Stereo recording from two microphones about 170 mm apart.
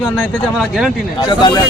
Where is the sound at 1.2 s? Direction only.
25° left (ahead or behind).